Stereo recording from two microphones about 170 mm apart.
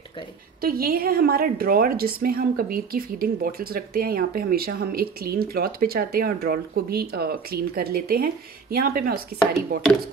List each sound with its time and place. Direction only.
0.6 s a woman's voice: 60° right (ahead or behind)